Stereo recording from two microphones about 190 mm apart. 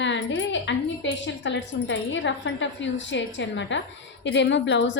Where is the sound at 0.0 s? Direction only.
70° left (ahead or behind).